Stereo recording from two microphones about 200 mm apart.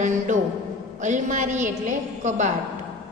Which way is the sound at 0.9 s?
35° right (ahead or behind).